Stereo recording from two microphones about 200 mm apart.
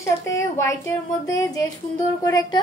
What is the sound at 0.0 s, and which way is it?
Speech, 15° left (ahead or behind).